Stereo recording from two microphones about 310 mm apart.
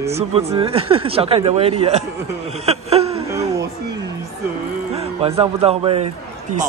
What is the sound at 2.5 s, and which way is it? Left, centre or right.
Chuckle, centre.